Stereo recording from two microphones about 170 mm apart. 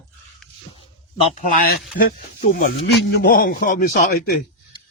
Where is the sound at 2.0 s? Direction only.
55° left (ahead or behind).